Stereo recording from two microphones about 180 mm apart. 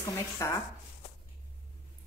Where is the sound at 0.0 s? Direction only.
15° left (ahead or behind).